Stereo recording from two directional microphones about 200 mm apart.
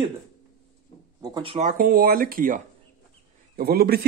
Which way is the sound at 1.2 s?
25° right (ahead or behind).